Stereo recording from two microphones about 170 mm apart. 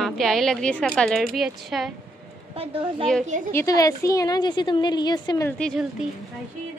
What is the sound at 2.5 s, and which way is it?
Speech, 35° right (ahead or behind).